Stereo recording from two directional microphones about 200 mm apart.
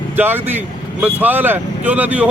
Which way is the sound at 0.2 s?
10° right (ahead or behind).